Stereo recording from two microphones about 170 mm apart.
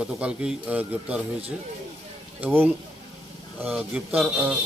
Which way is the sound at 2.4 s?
10° right (ahead or behind).